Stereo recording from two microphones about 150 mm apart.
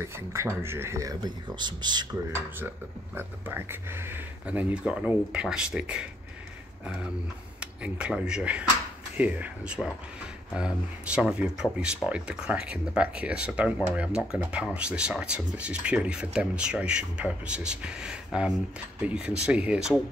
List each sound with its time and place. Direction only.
0.0 s speech: 15° right (ahead or behind)
3.2 s speech: 15° right (ahead or behind)
7.6 s speech: 5° right (ahead or behind)